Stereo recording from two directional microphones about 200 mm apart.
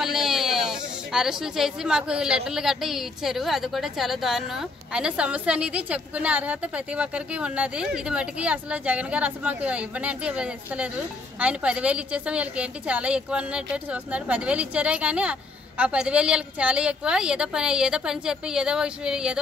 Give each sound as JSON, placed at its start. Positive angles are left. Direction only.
{"t": 0.0, "sound": "a woman's voice", "side_deg": 0}